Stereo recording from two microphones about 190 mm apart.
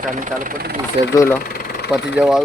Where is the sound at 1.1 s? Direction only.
15° left (ahead or behind).